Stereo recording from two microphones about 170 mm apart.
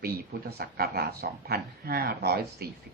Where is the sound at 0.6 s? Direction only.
65° right (ahead or behind).